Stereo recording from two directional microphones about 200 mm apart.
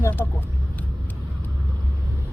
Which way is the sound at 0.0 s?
10° left (ahead or behind).